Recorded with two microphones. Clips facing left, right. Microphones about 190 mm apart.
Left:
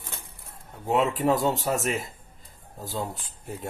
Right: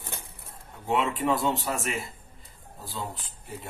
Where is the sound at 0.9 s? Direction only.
40° left (ahead or behind).